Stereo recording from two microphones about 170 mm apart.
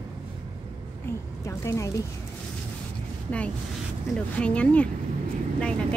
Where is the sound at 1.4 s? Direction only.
15° left (ahead or behind).